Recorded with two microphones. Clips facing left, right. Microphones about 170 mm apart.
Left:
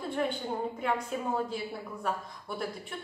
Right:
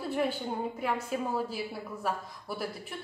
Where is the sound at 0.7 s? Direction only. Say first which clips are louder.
Even; 5° right (ahead or behind).